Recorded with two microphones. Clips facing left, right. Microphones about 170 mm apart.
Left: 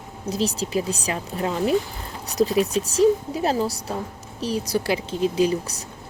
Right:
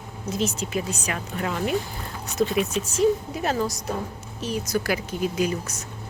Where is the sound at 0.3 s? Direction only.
35° left (ahead or behind).